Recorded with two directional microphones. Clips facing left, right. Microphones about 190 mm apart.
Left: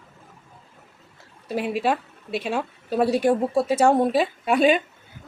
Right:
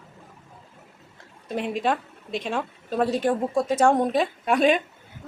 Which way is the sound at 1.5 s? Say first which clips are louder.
Left 2 dB; 5° left (ahead or behind).